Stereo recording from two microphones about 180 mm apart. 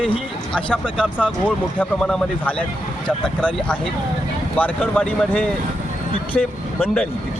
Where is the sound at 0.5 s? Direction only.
5° left (ahead or behind).